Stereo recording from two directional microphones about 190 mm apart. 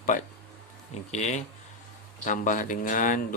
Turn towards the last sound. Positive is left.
turn(degrees=45)  # may be behind; listen again after turning